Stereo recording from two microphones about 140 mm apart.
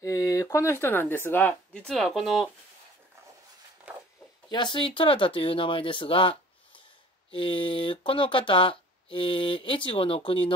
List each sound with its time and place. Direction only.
0.0 s speech: 25° left (ahead or behind); by 2.5 s centre (ahead or behind)
3.9 s walk: 10° right (ahead or behind)
4.5 s speech: 35° left (ahead or behind)